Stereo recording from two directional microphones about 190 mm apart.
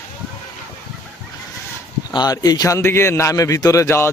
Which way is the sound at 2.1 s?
20° left (ahead or behind).